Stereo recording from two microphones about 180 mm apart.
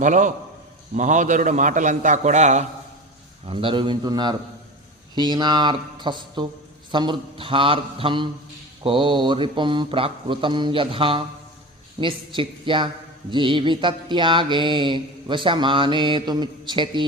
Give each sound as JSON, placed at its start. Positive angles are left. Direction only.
{"t": 0.0, "sound": "a man's voice", "side_deg": -45}
{"t": 3.4, "sound": "music", "side_deg": -30}